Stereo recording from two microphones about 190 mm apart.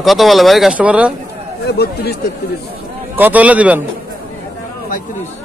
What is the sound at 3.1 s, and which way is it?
Speech, 10° right (ahead or behind).